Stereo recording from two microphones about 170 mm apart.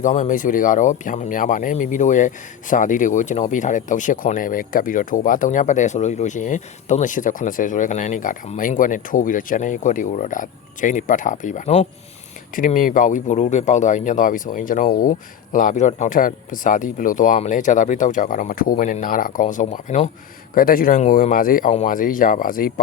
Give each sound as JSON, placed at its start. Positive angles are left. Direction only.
{"t": 0.0, "sound": "speech", "side_deg": 50}